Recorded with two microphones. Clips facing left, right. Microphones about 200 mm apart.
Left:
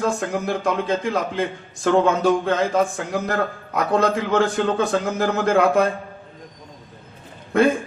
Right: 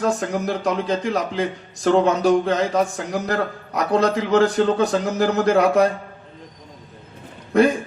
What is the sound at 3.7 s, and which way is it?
A man's voice, 55° left (ahead or behind).